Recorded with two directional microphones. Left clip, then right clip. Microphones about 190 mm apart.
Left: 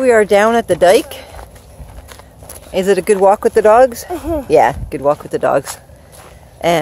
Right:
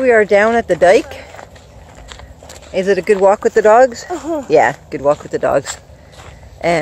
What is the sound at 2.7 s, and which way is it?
Speech, 20° left (ahead or behind).